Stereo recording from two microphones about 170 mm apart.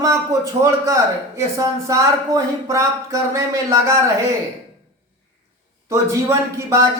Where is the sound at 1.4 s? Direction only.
20° right (ahead or behind).